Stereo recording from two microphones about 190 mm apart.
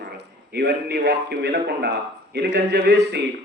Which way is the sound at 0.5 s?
60° right (ahead or behind).